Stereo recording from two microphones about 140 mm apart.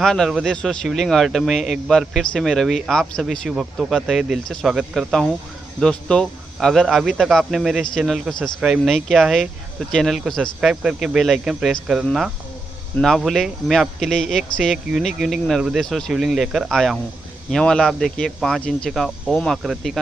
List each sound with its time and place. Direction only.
0.0 s speech: centre (ahead or behind)